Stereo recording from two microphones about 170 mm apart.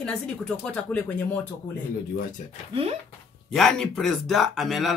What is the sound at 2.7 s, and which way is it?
Speech, 35° right (ahead or behind).